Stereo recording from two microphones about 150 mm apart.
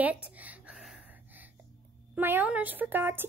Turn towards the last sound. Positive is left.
turn(degrees=-15)  # may be behind; listen again after turning